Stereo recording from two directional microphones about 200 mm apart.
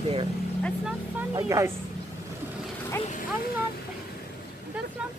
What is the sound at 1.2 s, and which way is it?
Speech, 15° right (ahead or behind).